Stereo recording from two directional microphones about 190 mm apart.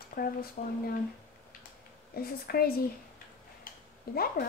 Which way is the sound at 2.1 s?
50° left (ahead or behind).